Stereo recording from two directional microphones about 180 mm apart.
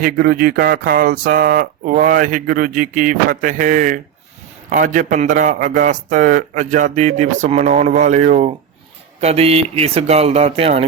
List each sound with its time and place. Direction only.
0.0 s speech: 55° right (ahead or behind); by 10.8 s 35° right (ahead or behind)